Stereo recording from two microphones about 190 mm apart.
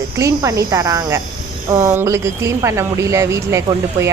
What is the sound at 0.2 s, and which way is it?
A woman's voice, 15° right (ahead or behind).